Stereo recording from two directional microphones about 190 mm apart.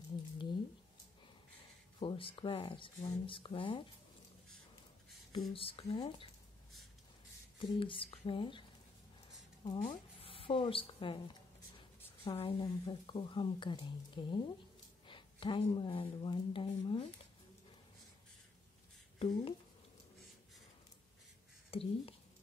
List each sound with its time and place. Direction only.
2.0 s speech: 25° left (ahead or behind)
5.5 s speech: 30° left (ahead or behind)
7.5 s speech: 25° left (ahead or behind)
9.7 s speech: 25° left (ahead or behind)
12.3 s speech: 30° left (ahead or behind)
19.1 s speech: 30° left (ahead or behind)
21.6 s speech: 30° left (ahead or behind)